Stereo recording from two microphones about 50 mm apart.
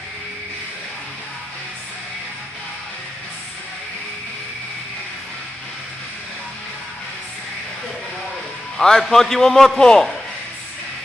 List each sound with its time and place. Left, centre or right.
8.8 s a man's voice: centre